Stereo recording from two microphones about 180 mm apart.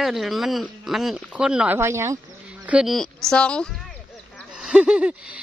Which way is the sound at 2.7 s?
5° right (ahead or behind).